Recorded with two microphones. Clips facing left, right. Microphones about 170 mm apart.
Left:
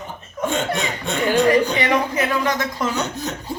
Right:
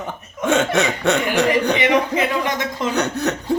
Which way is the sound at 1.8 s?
20° right (ahead or behind).